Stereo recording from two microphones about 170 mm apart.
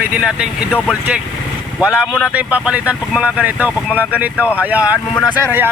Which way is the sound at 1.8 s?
5° right (ahead or behind).